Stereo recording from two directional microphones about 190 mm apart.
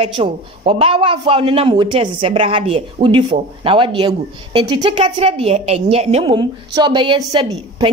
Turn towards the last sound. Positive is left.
turn(degrees=-25)  # may be behind; listen again after turning